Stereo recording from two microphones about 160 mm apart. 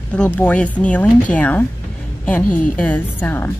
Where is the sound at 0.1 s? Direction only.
10° left (ahead or behind).